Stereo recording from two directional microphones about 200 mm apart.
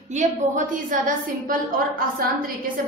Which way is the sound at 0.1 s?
40° right (ahead or behind).